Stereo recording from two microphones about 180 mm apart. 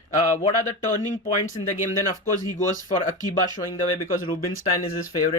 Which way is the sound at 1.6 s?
30° left (ahead or behind).